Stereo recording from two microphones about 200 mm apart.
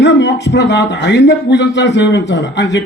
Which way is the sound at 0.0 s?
60° left (ahead or behind).